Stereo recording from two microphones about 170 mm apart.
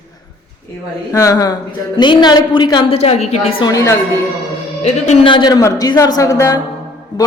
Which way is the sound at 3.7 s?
20° left (ahead or behind).